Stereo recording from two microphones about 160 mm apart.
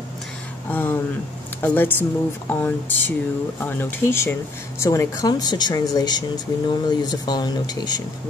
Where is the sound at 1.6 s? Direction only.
10° left (ahead or behind).